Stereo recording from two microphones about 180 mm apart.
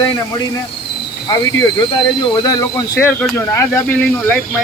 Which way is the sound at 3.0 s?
10° left (ahead or behind).